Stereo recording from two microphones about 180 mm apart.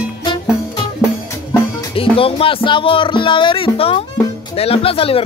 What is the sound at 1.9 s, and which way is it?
Speech, 30° left (ahead or behind).